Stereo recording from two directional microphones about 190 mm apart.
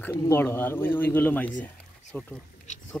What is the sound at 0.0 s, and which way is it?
Speech, 15° left (ahead or behind).